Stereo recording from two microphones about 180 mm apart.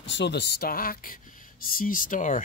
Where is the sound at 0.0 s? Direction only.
75° left (ahead or behind).